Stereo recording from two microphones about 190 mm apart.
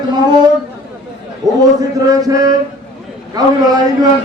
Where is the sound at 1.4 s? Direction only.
Centre (ahead or behind).